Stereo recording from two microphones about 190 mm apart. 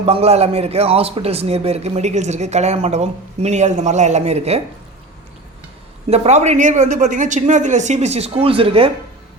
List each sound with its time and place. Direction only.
0.0 s speech: 30° right (ahead or behind)
6.1 s speech: 35° right (ahead or behind)